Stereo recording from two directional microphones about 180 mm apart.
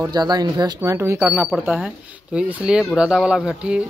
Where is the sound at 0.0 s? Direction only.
20° right (ahead or behind).